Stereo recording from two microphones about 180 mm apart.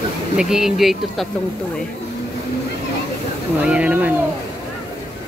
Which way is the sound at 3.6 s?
5° right (ahead or behind).